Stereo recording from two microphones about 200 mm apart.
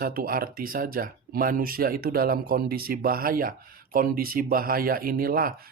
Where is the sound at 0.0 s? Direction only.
45° right (ahead or behind).